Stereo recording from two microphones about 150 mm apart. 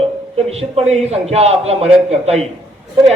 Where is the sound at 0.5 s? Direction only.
45° right (ahead or behind).